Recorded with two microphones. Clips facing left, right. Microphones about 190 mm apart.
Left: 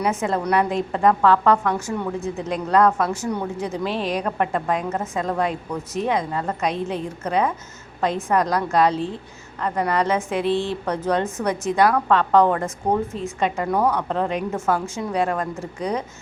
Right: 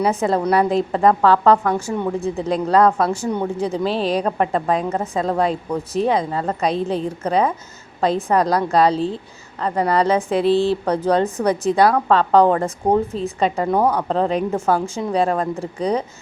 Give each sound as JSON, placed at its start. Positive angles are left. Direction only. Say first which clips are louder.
{"t": 0.0, "sound": "a woman's voice", "louder": "right 4 dB", "side_deg": -35}